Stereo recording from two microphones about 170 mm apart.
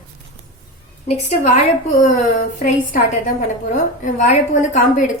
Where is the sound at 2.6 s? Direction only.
50° left (ahead or behind).